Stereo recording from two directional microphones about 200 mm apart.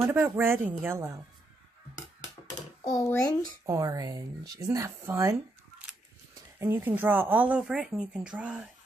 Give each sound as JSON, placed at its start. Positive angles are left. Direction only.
{"t": 0.0, "sound": "speech", "side_deg": -10}
{"t": 2.9, "sound": "a child's voice", "side_deg": 15}
{"t": 3.6, "sound": "speech", "side_deg": -20}
{"t": 6.6, "sound": "speech", "side_deg": -10}